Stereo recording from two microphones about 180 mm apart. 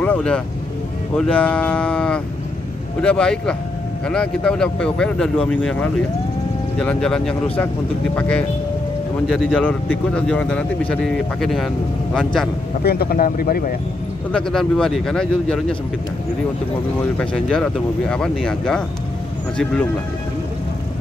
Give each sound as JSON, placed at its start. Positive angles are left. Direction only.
{"t": 0.0, "sound": "speech", "side_deg": 5}
{"t": 12.8, "sound": "speech", "side_deg": 55}
{"t": 14.3, "sound": "speech", "side_deg": 5}
{"t": 17.2, "sound": "speech", "side_deg": 5}